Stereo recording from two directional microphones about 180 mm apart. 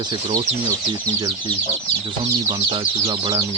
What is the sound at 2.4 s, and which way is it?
Speech, 30° right (ahead or behind).